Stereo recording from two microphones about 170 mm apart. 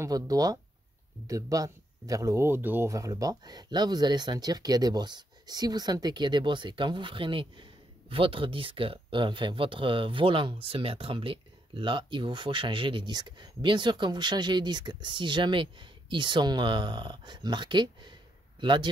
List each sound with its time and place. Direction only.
0.0 s a man's voice: 20° right (ahead or behind)